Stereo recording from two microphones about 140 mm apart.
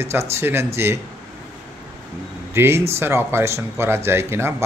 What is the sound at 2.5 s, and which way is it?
Speech, 20° right (ahead or behind).